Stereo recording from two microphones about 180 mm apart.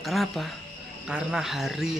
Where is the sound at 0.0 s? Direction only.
Centre (ahead or behind).